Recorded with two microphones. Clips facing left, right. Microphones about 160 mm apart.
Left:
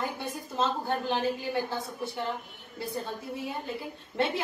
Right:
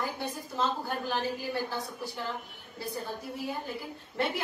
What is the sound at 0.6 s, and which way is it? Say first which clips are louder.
A woman's voice: left 2 dB; 25° left (ahead or behind).